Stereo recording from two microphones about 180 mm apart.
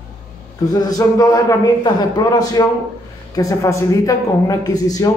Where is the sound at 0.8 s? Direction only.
20° left (ahead or behind).